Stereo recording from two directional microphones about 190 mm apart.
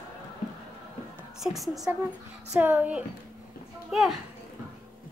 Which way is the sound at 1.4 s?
Centre (ahead or behind).